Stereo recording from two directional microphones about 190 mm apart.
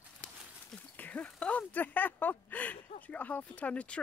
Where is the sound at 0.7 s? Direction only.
10° left (ahead or behind).